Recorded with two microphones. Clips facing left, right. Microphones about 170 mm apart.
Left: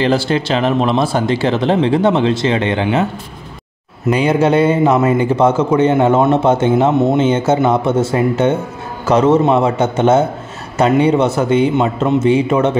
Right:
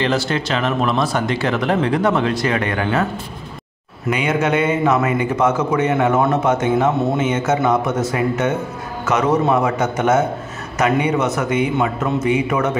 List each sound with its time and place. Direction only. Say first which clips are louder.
0.0 s a man's voice: left 5 dB; 30° left (ahead or behind)
4.1 s a man's voice: left 6 dB; 35° left (ahead or behind)